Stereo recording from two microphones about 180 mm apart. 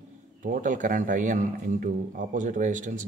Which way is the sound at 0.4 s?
45° right (ahead or behind).